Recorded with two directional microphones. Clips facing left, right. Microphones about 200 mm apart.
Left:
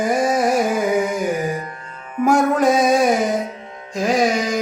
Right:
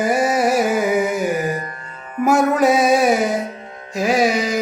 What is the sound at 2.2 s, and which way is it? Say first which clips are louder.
Music: even; 5° right (ahead or behind).